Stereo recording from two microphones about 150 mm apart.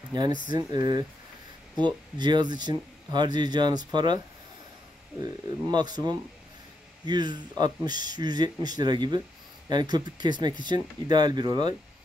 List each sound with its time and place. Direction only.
0.1 s speech: 30° right (ahead or behind)
5.2 s speech: 30° right (ahead or behind)